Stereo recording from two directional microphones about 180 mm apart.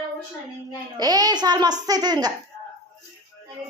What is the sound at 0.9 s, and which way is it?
A child's voice, 20° right (ahead or behind).